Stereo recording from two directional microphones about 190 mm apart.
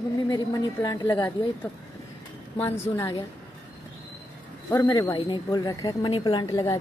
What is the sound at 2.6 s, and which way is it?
Speech, 15° left (ahead or behind).